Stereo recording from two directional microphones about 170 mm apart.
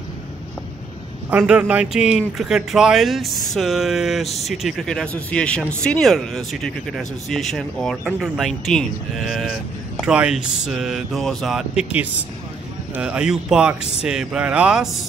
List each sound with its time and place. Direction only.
1.3 s speech: 5° right (ahead or behind)